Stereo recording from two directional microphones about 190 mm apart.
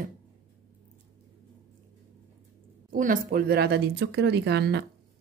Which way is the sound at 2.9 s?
45° right (ahead or behind).